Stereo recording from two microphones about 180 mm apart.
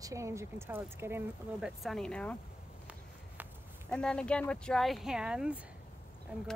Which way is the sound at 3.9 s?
5° left (ahead or behind).